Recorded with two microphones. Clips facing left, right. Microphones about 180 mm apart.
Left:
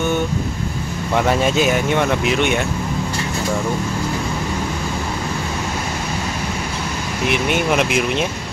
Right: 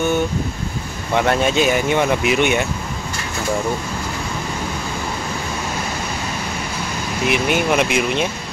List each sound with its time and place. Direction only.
1.1 s speech: centre (ahead or behind)
7.2 s speech: centre (ahead or behind)